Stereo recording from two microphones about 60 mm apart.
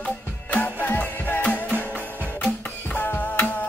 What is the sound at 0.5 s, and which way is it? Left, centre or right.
Music, left.